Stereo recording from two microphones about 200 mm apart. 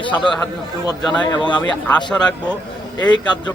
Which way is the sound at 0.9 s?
20° left (ahead or behind).